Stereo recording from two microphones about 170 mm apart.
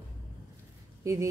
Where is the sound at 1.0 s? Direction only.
20° right (ahead or behind).